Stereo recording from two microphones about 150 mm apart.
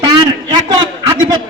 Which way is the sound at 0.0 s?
30° right (ahead or behind).